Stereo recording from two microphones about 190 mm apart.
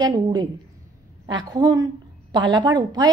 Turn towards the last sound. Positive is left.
turn(degrees=-20)  # may be behind; listen again after turning